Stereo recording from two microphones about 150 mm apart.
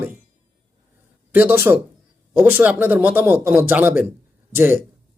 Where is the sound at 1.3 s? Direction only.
15° right (ahead or behind).